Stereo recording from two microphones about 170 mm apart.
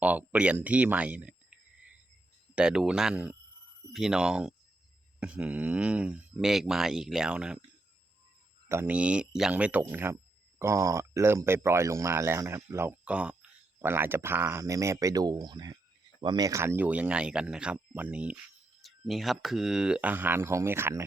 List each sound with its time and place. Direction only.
0.0 s speech: 10° right (ahead or behind)
2.6 s speech: 5° right (ahead or behind)
8.7 s speech: 10° right (ahead or behind)